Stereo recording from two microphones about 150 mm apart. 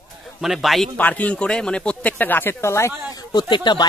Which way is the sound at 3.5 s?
30° left (ahead or behind).